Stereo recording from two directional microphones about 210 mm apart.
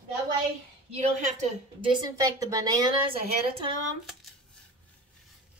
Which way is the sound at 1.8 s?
20° right (ahead or behind).